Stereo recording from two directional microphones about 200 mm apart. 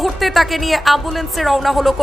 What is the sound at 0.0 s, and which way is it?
A woman's voice, centre (ahead or behind).